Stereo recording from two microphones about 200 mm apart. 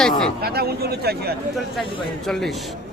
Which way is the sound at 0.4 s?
50° right (ahead or behind).